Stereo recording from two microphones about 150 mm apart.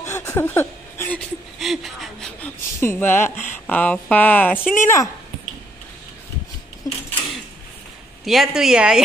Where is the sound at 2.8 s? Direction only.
15° left (ahead or behind).